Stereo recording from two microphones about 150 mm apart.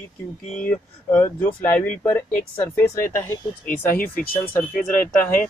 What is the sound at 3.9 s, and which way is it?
Speech, 70° left (ahead or behind).